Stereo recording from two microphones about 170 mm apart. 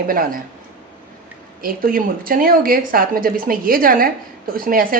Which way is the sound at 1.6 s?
55° right (ahead or behind).